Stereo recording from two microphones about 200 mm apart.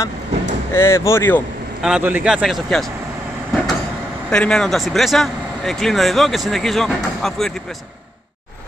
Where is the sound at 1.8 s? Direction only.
5° right (ahead or behind).